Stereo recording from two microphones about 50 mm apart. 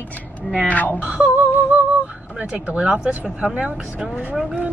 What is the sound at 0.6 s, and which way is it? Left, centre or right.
Speech, left.